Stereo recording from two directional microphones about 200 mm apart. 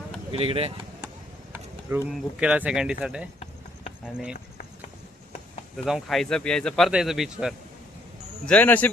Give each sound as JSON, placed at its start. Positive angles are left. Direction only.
{"t": 0.3, "sound": "speech", "side_deg": -30}
{"t": 1.9, "sound": "speech", "side_deg": -10}
{"t": 5.7, "sound": "speech", "side_deg": 0}